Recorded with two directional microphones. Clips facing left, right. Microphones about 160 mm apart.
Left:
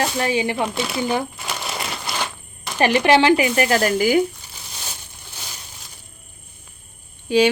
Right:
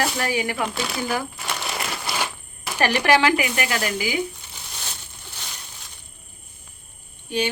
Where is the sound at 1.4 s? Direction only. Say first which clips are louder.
Left 1 dB; centre (ahead or behind).